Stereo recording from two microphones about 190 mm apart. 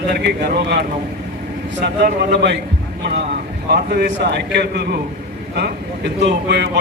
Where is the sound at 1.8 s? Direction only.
60° right (ahead or behind).